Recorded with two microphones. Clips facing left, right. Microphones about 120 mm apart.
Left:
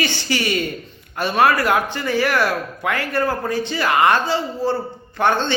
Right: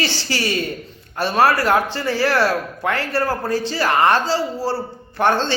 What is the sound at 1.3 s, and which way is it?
Speech, 35° right (ahead or behind).